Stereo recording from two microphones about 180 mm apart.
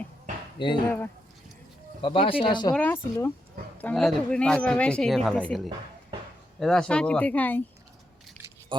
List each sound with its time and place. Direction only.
0.9 s speech: 10° left (ahead or behind)
2.0 s speech: 30° left (ahead or behind)
2.7 s speech: 10° left (ahead or behind)